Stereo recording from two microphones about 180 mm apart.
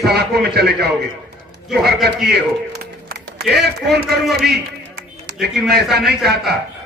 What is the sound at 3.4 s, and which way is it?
Speech, centre (ahead or behind).